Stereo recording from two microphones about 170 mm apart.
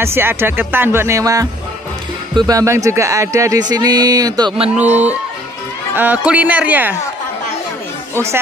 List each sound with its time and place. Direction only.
0.0 s speech: 15° right (ahead or behind)
4.7 s speech: 10° right (ahead or behind)